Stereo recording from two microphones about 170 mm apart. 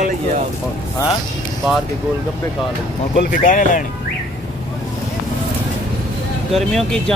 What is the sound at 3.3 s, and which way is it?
Speech, 50° left (ahead or behind).